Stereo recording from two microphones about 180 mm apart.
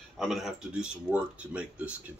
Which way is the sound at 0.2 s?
Centre (ahead or behind).